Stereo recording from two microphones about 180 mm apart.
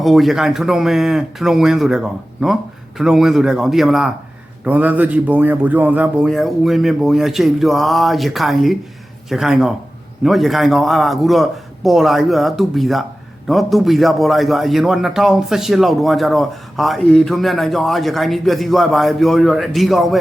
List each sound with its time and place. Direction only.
0.0 s a man's voice: centre (ahead or behind)